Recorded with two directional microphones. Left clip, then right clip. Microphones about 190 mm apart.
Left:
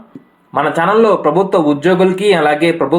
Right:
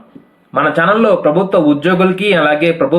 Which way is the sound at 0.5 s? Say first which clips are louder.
Even; 25° left (ahead or behind).